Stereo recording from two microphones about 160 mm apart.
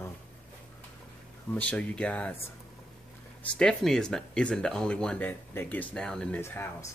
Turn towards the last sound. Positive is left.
turn(degrees=15)  # may be behind; listen again after turning